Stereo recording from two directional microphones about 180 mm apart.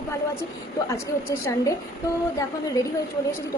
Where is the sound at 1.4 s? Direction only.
20° left (ahead or behind).